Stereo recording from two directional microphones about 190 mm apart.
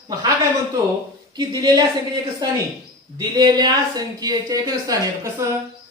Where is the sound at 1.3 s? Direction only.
20° right (ahead or behind).